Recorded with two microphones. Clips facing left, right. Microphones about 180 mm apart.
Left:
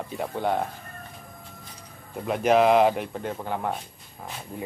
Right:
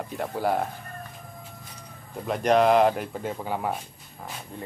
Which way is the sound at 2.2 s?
5° left (ahead or behind).